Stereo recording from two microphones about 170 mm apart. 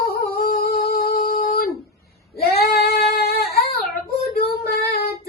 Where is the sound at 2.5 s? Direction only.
70° left (ahead or behind).